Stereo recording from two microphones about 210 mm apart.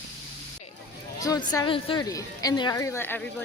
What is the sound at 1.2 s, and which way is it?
A woman's voice, 20° left (ahead or behind).